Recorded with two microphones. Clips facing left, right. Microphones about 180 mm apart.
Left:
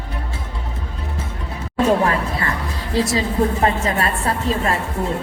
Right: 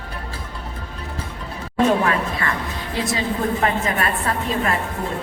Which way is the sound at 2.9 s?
30° left (ahead or behind).